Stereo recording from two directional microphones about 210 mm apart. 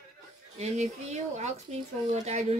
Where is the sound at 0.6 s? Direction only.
30° right (ahead or behind).